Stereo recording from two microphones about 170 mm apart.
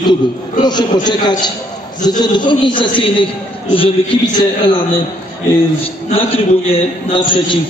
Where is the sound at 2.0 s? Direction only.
25° left (ahead or behind).